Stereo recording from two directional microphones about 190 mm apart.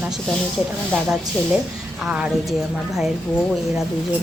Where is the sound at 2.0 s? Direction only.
5° right (ahead or behind).